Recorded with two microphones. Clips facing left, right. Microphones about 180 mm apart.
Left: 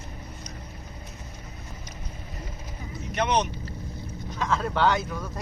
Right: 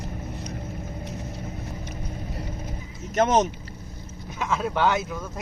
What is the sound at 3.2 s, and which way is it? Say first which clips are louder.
Speech: right 5 dB; 45° right (ahead or behind).